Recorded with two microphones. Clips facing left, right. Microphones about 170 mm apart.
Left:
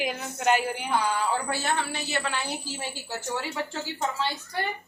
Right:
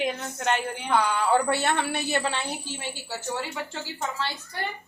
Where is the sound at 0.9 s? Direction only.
65° right (ahead or behind).